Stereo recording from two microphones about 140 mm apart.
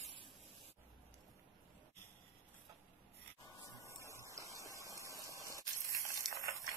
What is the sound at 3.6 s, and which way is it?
Rub, 20° left (ahead or behind).